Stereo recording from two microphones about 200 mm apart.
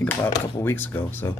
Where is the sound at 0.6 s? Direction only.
10° left (ahead or behind).